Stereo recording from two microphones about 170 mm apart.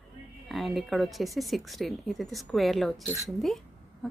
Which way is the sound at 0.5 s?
Centre (ahead or behind).